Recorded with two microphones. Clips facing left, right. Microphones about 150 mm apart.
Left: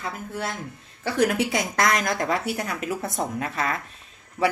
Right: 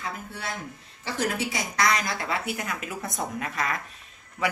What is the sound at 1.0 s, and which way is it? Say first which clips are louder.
Speech: left 6 dB; 55° left (ahead or behind).